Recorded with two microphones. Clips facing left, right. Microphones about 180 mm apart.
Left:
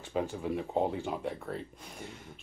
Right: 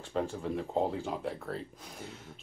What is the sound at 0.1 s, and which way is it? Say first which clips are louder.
Speech: left 1 dB; 5° left (ahead or behind).